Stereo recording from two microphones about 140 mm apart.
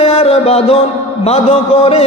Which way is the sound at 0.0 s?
45° left (ahead or behind).